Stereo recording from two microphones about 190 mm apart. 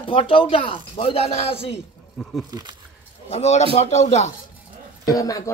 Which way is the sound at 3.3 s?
35° left (ahead or behind).